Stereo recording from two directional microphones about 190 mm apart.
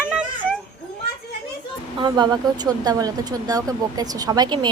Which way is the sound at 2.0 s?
20° right (ahead or behind).